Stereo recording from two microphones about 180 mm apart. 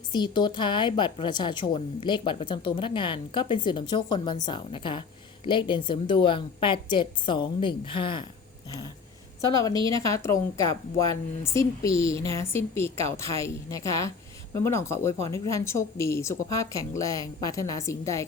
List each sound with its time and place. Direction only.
0.1 s a woman's voice: 25° left (ahead or behind)
9.4 s a woman's voice: 20° left (ahead or behind)